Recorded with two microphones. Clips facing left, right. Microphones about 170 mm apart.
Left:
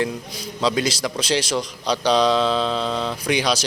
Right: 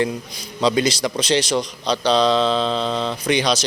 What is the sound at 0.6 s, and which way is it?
A man's voice, centre (ahead or behind).